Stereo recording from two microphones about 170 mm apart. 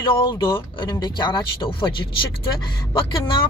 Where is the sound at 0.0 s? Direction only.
30° left (ahead or behind).